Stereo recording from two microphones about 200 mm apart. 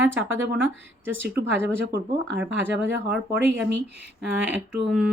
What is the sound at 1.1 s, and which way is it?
Speech, 65° right (ahead or behind).